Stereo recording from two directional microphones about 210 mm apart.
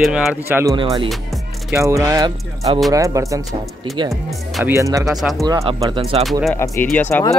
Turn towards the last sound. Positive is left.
turn(degrees=10)  # may be behind; listen again after turning